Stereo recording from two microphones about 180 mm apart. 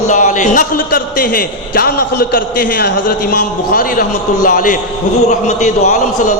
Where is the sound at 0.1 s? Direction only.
45° left (ahead or behind).